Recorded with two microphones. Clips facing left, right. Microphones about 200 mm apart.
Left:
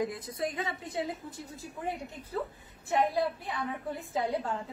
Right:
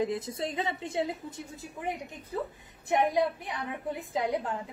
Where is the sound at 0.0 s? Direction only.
25° right (ahead or behind).